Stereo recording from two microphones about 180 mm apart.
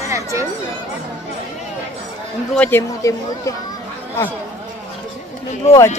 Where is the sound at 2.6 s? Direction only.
10° left (ahead or behind).